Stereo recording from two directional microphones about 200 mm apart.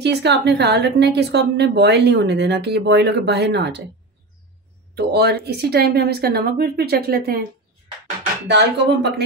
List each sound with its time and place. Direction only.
0.0 s a woman's voice: 55° right (ahead or behind)
4.9 s speech: 55° right (ahead or behind)
8.5 s a woman's voice: 60° right (ahead or behind)